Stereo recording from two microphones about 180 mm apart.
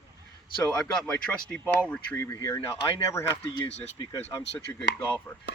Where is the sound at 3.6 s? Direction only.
35° left (ahead or behind).